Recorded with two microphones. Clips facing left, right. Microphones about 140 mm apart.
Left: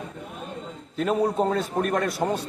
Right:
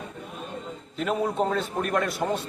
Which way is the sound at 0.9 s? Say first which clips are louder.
Left 3 dB; 35° left (ahead or behind).